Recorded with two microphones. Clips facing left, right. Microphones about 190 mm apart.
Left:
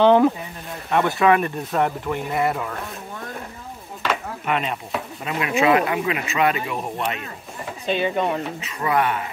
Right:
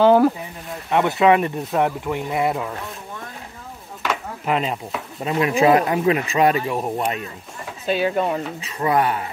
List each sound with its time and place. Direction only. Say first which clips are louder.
0.0 s speech: right 1 dB; 5° right (ahead or behind)
0.9 s speech: right 2 dB; 20° right (ahead or behind)
4.5 s speech: right 2 dB; 30° right (ahead or behind)
7.8 s speech: right 2 dB; 5° right (ahead or behind)
8.5 s speech: right 2 dB; 35° right (ahead or behind)